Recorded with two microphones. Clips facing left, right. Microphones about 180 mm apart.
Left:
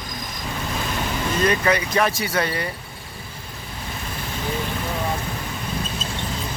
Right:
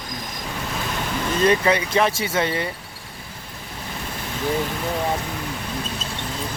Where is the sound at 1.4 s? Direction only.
25° right (ahead or behind).